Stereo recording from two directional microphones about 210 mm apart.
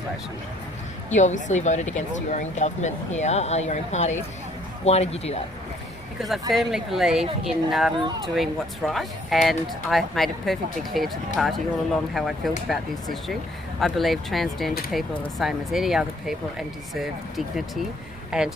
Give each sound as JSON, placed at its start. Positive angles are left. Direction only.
{"t": 1.1, "sound": "speech", "side_deg": 35}
{"t": 6.5, "sound": "speech", "side_deg": 0}